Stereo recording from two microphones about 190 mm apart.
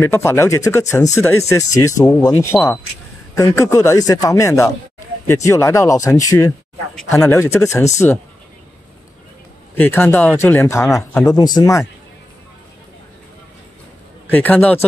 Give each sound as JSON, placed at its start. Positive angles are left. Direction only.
{"t": 0.0, "sound": "speech", "side_deg": 10}
{"t": 9.8, "sound": "speech", "side_deg": 10}
{"t": 14.2, "sound": "speech", "side_deg": 10}